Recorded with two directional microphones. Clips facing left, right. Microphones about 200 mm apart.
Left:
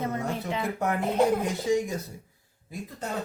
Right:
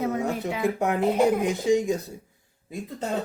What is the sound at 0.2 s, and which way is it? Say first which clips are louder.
A man's voice: right 4 dB; 15° right (ahead or behind).